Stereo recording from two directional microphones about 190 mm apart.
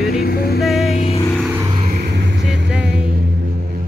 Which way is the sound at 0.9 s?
35° left (ahead or behind).